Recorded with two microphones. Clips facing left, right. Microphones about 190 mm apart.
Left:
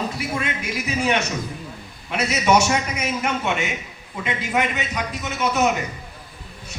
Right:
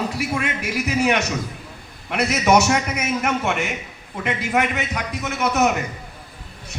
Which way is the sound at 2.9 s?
60° right (ahead or behind).